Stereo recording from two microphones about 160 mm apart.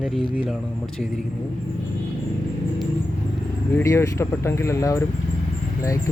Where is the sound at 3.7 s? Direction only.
15° left (ahead or behind).